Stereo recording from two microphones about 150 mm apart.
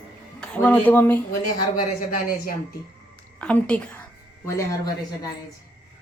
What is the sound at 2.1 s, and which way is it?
Speech, 75° left (ahead or behind).